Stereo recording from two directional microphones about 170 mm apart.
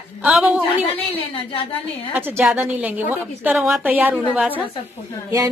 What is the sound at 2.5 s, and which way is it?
A woman's voice, 10° right (ahead or behind).